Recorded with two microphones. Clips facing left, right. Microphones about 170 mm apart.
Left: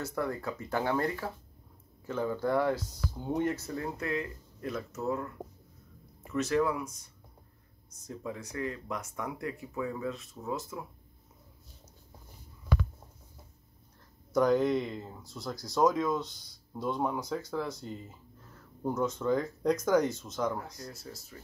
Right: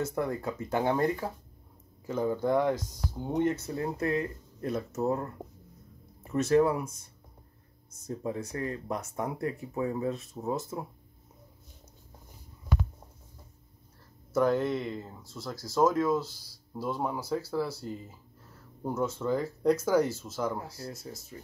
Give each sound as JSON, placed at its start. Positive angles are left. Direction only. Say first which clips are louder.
{"t": 0.0, "sound": "speech", "louder": "right 3 dB", "side_deg": -20}
{"t": 3.6, "sound": "speech", "louder": "right 4 dB", "side_deg": -30}
{"t": 6.3, "sound": "speech", "louder": "right 4 dB", "side_deg": -40}
{"t": 8.1, "sound": "speech", "louder": "right 5 dB", "side_deg": -30}
{"t": 14.3, "sound": "speech", "louder": "left 1 dB", "side_deg": 0}
{"t": 20.9, "sound": "speech", "louder": "right 3 dB", "side_deg": -20}